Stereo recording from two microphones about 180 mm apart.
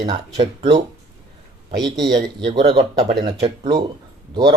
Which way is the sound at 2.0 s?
25° right (ahead or behind).